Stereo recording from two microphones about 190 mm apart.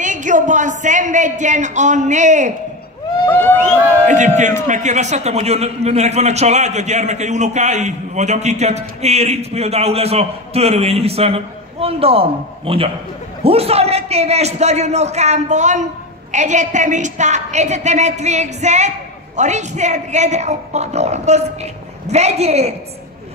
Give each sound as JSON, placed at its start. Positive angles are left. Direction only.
{"t": 0.0, "sound": "a man's voice", "side_deg": -40}
{"t": 3.3, "sound": "speech", "side_deg": 10}
{"t": 4.6, "sound": "a man's voice", "side_deg": -40}